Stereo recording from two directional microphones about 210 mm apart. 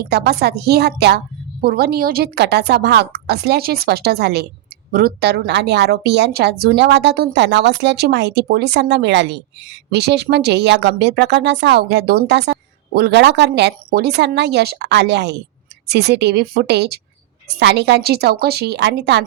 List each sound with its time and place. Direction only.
0.1 s a woman's voice: 50° right (ahead or behind)